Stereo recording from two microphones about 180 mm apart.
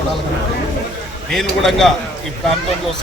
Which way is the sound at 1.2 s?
Centre (ahead or behind).